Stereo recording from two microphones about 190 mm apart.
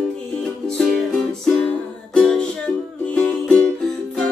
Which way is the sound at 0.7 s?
5° left (ahead or behind).